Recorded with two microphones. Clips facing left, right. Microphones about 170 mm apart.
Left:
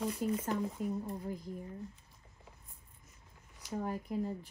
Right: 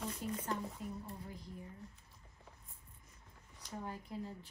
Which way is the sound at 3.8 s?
45° left (ahead or behind).